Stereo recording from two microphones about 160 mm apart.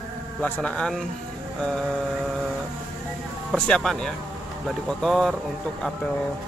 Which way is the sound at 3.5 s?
Centre (ahead or behind).